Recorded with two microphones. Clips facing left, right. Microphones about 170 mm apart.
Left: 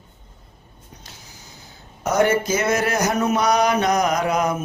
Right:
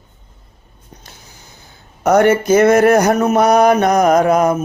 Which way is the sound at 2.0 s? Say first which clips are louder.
Right 7 dB; 65° right (ahead or behind).